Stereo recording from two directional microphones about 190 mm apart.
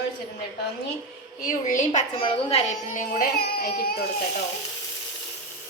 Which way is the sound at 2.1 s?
30° left (ahead or behind).